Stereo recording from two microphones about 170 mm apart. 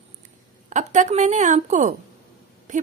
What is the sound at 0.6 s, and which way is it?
A woman's voice, 45° right (ahead or behind).